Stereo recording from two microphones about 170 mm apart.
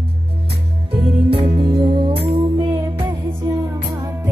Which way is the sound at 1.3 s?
30° right (ahead or behind).